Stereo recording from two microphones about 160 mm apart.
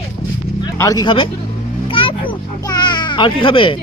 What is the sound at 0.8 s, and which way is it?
A child's voice, 25° left (ahead or behind).